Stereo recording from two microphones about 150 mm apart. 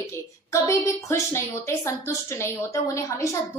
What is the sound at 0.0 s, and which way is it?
A woman's voice, 20° left (ahead or behind).